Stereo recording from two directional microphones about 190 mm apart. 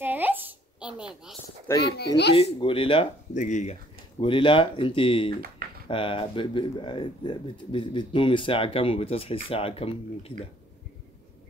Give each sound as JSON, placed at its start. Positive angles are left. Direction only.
{"t": 0.0, "sound": "a sound", "side_deg": -10}
{"t": 1.9, "sound": "a child's voice", "side_deg": 60}
{"t": 2.3, "sound": "speech", "side_deg": 30}
{"t": 3.3, "sound": "speech", "side_deg": 40}
{"t": 4.2, "sound": "speech", "side_deg": 25}